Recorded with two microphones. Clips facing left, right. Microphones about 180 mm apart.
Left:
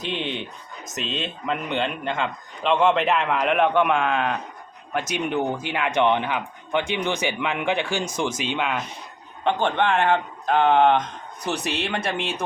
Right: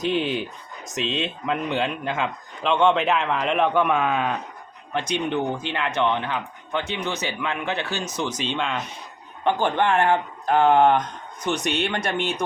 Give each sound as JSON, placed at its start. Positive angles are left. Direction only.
{"t": 0.0, "sound": "a man's voice", "side_deg": -5}
{"t": 4.9, "sound": "speech", "side_deg": 10}
{"t": 9.6, "sound": "speech", "side_deg": -5}
{"t": 11.5, "sound": "speech", "side_deg": 30}